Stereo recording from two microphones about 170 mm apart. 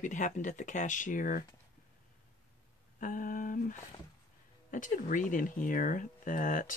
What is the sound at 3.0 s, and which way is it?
Speech, 50° left (ahead or behind).